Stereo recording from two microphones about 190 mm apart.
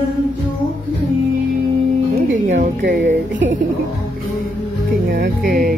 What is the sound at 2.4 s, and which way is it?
Speech, 40° right (ahead or behind).